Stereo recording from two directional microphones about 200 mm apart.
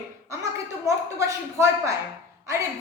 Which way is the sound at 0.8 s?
15° right (ahead or behind).